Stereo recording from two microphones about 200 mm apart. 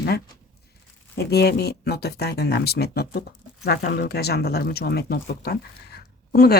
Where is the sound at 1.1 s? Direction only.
55° left (ahead or behind).